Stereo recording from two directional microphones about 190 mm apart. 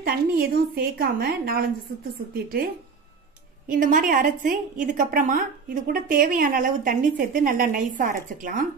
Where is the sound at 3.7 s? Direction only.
45° right (ahead or behind).